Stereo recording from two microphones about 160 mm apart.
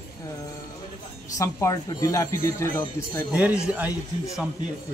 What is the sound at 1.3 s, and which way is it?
Speech, 20° left (ahead or behind).